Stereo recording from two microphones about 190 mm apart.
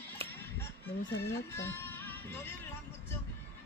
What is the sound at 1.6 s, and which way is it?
Music, 10° left (ahead or behind).